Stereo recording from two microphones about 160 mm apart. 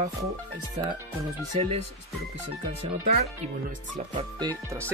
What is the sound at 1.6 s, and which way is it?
Speech, 40° right (ahead or behind).